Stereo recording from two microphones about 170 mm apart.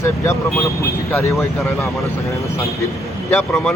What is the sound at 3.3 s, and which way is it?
Speech, 15° left (ahead or behind).